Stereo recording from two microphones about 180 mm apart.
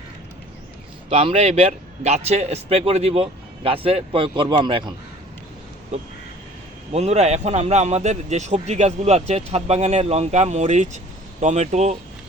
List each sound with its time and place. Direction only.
1.1 s a man's voice: 35° right (ahead or behind)
6.9 s a man's voice: 35° right (ahead or behind)